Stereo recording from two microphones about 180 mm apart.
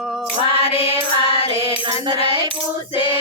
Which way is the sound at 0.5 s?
30° left (ahead or behind).